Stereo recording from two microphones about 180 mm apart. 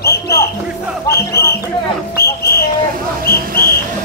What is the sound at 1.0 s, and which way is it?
Music, 15° left (ahead or behind).